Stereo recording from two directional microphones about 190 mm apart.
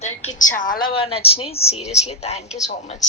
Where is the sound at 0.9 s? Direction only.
30° left (ahead or behind).